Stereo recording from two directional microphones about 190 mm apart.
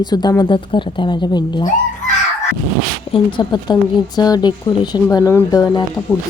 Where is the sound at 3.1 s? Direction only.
25° left (ahead or behind).